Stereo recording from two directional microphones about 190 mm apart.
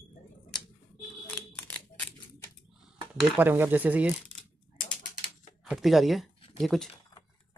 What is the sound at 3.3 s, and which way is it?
Speech, 10° right (ahead or behind).